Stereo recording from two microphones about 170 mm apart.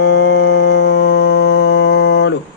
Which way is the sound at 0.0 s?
90° left.